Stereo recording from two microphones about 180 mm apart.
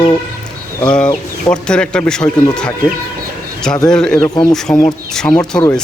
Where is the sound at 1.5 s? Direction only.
5° left (ahead or behind).